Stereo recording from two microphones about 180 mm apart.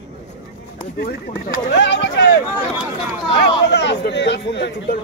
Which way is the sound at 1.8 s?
80° left.